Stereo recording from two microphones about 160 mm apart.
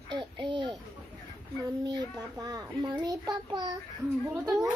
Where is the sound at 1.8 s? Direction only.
25° right (ahead or behind).